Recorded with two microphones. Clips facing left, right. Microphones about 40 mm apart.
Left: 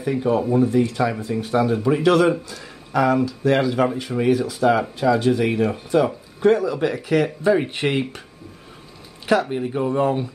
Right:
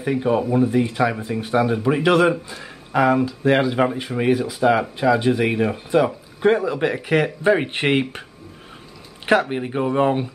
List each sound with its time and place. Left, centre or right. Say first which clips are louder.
0.0 s speech: even; centre
9.2 s speech: right 1 dB; right